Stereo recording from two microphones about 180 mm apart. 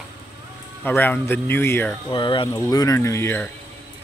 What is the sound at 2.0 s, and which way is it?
Speech, 25° left (ahead or behind).